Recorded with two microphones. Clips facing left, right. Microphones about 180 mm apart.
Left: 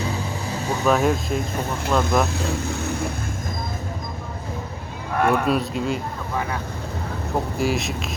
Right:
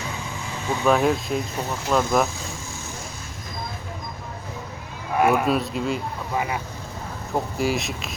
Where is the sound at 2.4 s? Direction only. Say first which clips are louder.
Left 10 dB; 65° left (ahead or behind).